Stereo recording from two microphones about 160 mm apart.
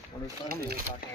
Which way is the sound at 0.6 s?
75° right (ahead or behind).